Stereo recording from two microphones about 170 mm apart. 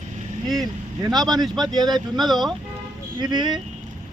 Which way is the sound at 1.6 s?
25° right (ahead or behind).